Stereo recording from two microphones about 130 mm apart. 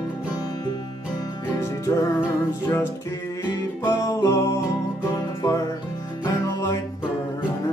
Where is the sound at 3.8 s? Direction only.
20° left (ahead or behind).